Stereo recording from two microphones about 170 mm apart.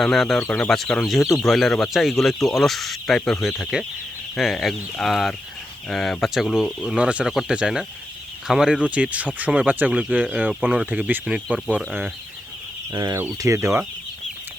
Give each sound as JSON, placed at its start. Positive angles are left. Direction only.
{"t": 0.0, "sound": "speech", "side_deg": 0}
{"t": 12.9, "sound": "speech", "side_deg": -25}